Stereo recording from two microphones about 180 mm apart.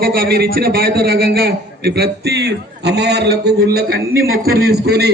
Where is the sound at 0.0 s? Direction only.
55° right (ahead or behind).